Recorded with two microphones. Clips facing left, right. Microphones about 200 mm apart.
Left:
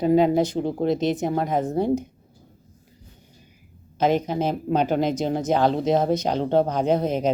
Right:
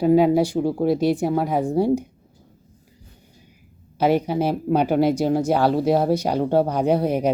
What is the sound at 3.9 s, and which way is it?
Speech, 10° right (ahead or behind).